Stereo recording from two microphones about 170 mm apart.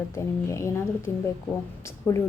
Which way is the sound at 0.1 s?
15° left (ahead or behind).